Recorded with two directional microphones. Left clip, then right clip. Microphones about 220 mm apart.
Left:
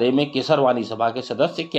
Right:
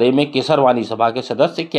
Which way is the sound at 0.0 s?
25° right (ahead or behind).